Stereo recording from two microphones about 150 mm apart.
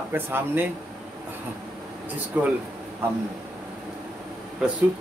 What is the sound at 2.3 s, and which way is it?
Speech, 10° right (ahead or behind).